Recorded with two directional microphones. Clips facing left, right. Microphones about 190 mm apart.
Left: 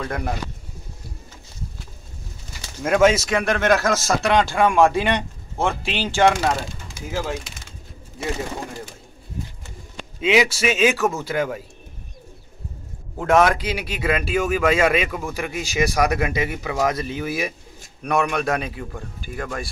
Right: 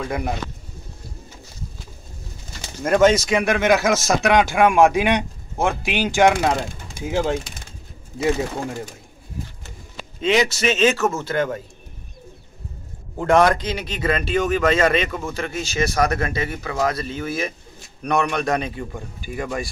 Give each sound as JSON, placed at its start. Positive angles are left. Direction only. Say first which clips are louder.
{"t": 0.0, "sound": "speech", "louder": "right 2 dB", "side_deg": -5}
{"t": 2.8, "sound": "speech", "louder": "right 1 dB", "side_deg": 5}
{"t": 10.2, "sound": "speech", "louder": "even", "side_deg": 10}
{"t": 13.2, "sound": "a man's voice", "louder": "right 1 dB", "side_deg": 5}